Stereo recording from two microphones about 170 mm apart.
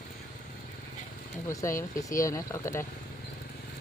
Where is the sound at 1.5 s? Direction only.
15° left (ahead or behind).